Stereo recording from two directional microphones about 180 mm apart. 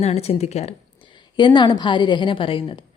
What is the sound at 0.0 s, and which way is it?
Speech, 35° left (ahead or behind).